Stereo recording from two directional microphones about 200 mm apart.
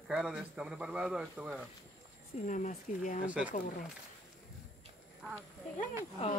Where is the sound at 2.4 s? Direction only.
40° left (ahead or behind).